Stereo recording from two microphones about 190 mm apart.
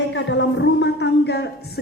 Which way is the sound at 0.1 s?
70° left (ahead or behind).